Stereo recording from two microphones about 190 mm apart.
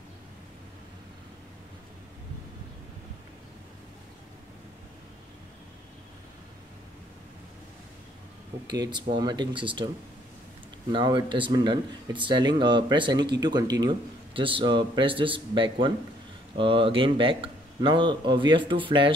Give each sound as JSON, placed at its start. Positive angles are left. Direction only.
{"t": 8.6, "sound": "a man's voice", "side_deg": -20}
{"t": 10.9, "sound": "a man's voice", "side_deg": -25}